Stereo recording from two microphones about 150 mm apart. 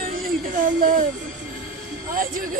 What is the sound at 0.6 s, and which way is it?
Speech, 60° right (ahead or behind).